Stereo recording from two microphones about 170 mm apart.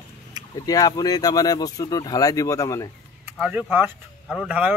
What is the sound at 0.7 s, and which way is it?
Speech, 25° left (ahead or behind).